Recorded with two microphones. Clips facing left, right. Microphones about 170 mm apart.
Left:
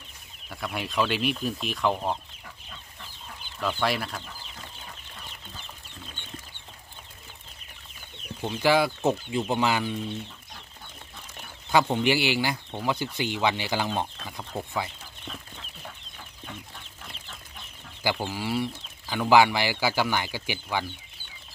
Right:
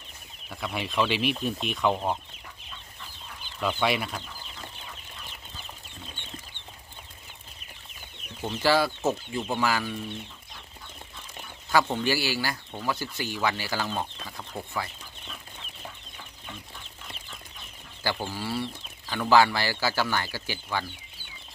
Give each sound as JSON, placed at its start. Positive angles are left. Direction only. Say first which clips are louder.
{"t": 0.5, "sound": "speech", "louder": "even", "side_deg": 0}
{"t": 3.6, "sound": "speech", "louder": "right 1 dB", "side_deg": 0}
{"t": 8.4, "sound": "speech", "louder": "left 1 dB", "side_deg": 15}
{"t": 11.7, "sound": "speech", "louder": "left 2 dB", "side_deg": 20}
{"t": 18.0, "sound": "speech", "louder": "left 2 dB", "side_deg": 15}